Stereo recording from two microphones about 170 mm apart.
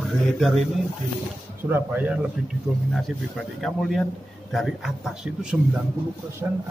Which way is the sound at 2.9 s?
Centre (ahead or behind).